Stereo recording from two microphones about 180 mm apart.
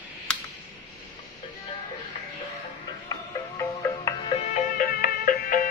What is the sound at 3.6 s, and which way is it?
Music, 15° left (ahead or behind).